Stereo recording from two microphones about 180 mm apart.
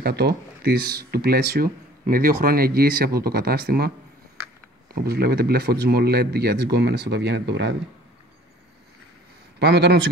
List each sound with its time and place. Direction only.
0.0 s speech: 60° right (ahead or behind)
4.9 s speech: 60° right (ahead or behind)
9.6 s a man's voice: 70° right (ahead or behind)